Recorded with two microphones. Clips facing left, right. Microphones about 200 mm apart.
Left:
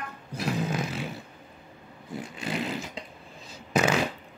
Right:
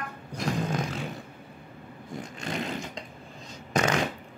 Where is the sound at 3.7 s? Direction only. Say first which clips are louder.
Left 1 dB; 5° left (ahead or behind).